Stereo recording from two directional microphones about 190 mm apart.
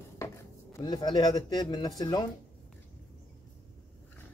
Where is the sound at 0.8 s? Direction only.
25° left (ahead or behind).